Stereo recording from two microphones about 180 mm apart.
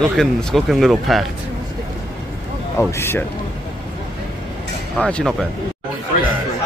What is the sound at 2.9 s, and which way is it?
Speech, 15° left (ahead or behind).